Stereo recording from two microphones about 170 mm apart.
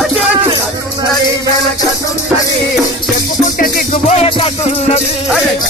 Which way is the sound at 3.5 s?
60° left (ahead or behind).